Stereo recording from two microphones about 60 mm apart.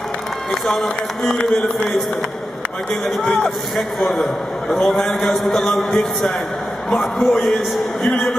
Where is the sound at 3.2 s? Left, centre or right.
Centre.